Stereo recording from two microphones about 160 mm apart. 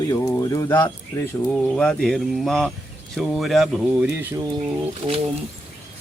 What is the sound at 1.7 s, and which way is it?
Speech, 5° left (ahead or behind).